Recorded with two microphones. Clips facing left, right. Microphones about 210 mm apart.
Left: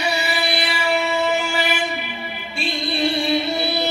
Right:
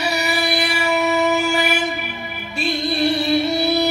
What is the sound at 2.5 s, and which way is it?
Music, 40° right (ahead or behind).